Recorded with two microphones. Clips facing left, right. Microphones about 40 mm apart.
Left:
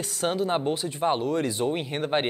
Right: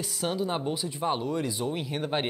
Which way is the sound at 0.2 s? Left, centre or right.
Left.